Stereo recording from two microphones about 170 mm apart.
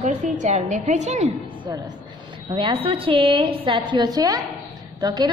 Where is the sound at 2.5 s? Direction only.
30° right (ahead or behind).